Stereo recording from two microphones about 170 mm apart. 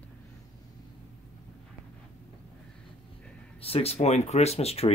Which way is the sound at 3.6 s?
35° left (ahead or behind).